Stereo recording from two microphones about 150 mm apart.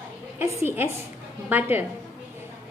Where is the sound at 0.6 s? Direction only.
15° right (ahead or behind).